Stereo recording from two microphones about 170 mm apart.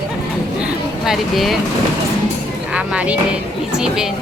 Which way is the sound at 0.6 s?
5° right (ahead or behind).